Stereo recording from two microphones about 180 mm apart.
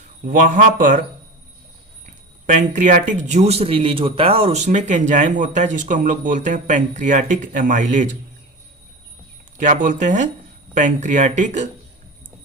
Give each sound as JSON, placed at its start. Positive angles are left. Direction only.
{"t": 0.3, "sound": "speech", "side_deg": -45}
{"t": 2.5, "sound": "speech", "side_deg": -45}
{"t": 9.6, "sound": "speech", "side_deg": -45}